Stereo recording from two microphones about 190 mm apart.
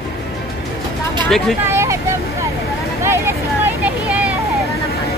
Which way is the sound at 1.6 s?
15° right (ahead or behind).